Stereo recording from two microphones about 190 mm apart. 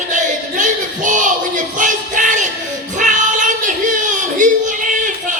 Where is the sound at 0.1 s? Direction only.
40° right (ahead or behind).